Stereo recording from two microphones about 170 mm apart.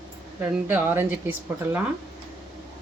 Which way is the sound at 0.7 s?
15° right (ahead or behind).